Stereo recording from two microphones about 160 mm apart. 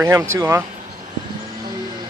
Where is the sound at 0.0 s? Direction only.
20° right (ahead or behind).